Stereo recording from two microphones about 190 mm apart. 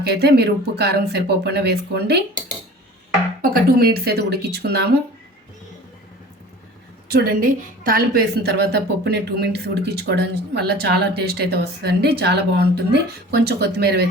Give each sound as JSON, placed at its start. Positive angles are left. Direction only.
{"t": 0.1, "sound": "a woman's voice", "side_deg": -60}
{"t": 3.4, "sound": "a woman's voice", "side_deg": -50}
{"t": 7.1, "sound": "a woman's voice", "side_deg": -55}